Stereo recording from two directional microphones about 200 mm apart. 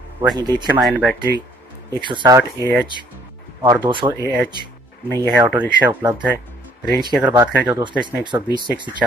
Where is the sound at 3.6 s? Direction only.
20° right (ahead or behind).